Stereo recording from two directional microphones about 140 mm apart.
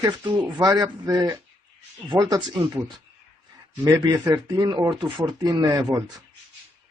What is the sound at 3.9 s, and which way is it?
Speech, 25° right (ahead or behind).